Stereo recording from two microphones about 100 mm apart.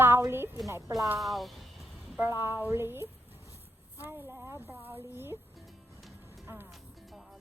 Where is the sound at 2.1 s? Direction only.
25° right (ahead or behind).